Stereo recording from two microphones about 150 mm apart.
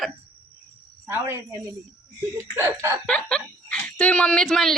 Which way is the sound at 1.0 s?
15° right (ahead or behind).